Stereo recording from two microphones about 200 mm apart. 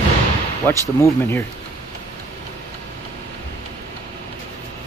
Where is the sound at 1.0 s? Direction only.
10° left (ahead or behind).